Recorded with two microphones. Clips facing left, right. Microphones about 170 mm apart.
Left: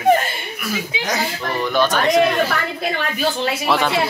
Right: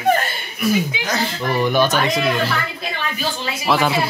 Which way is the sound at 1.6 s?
10° right (ahead or behind).